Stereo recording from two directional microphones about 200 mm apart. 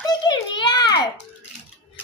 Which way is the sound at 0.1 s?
20° left (ahead or behind).